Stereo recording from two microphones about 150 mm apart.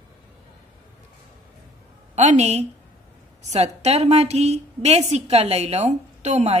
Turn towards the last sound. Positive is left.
turn(degrees=-50)  # may be behind; listen again after turning